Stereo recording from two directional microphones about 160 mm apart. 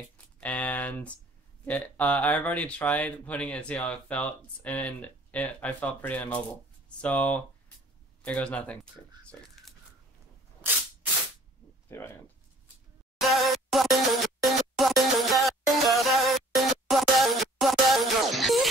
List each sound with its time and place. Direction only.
0.4 s speech: 10° left (ahead or behind)
11.9 s speech: 15° left (ahead or behind)
13.2 s music: centre (ahead or behind)